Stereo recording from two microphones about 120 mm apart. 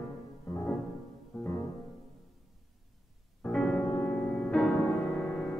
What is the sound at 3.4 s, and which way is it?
Music, 10° left (ahead or behind).